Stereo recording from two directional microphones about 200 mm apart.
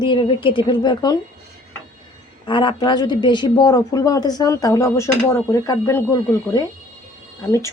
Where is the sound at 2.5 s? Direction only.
25° left (ahead or behind).